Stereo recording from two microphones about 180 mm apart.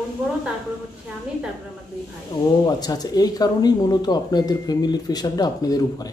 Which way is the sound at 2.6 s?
20° left (ahead or behind).